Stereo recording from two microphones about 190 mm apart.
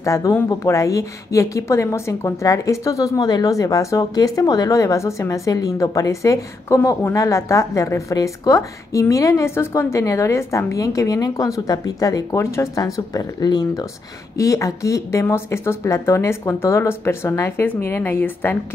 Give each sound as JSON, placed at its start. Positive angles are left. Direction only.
{"t": 0.0, "sound": "a woman's voice", "side_deg": 15}